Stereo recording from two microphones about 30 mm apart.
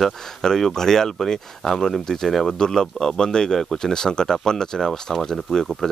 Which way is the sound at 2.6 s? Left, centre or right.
Centre.